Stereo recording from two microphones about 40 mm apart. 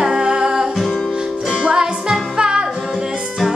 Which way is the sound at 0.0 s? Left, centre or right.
Centre.